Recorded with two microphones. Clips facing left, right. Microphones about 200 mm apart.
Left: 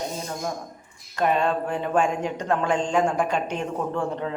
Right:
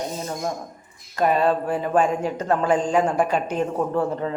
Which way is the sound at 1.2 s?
5° right (ahead or behind).